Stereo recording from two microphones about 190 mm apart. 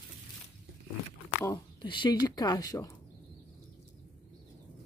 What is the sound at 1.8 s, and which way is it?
Speech, 25° left (ahead or behind).